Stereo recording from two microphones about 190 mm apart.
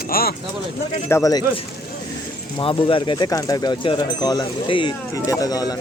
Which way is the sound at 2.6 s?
30° left (ahead or behind).